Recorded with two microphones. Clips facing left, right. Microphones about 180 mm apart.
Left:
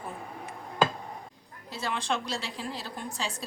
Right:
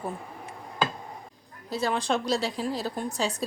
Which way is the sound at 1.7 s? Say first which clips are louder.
Right 5 dB; 40° right (ahead or behind).